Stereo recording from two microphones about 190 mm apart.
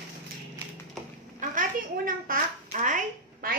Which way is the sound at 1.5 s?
45° right (ahead or behind).